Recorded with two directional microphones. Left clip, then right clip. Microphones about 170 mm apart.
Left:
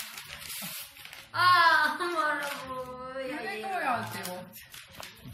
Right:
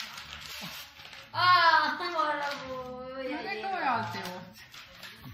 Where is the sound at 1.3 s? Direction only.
25° left (ahead or behind).